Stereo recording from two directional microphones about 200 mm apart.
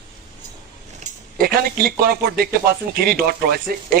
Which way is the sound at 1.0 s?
50° right (ahead or behind).